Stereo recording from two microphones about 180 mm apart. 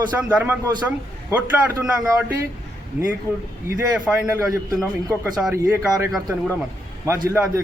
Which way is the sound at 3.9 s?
10° right (ahead or behind).